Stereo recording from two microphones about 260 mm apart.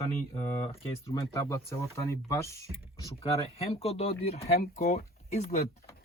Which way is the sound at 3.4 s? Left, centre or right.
Left.